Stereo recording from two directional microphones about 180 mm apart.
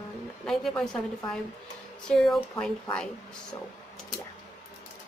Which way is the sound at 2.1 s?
Centre (ahead or behind).